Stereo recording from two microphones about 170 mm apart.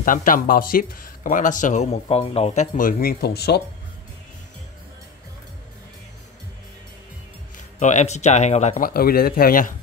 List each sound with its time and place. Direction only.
0.0 s speech: 50° left (ahead or behind); by 3.6 s 70° left (ahead or behind)
7.5 s speech: 45° left (ahead or behind)